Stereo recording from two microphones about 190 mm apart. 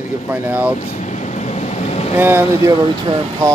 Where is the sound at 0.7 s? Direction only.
40° left (ahead or behind).